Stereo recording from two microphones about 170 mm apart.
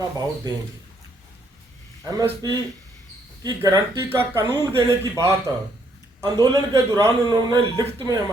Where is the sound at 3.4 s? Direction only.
20° right (ahead or behind).